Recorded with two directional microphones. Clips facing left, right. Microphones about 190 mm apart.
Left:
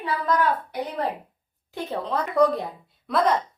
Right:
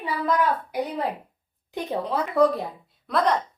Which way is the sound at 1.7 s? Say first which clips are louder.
Right 1 dB; 15° right (ahead or behind).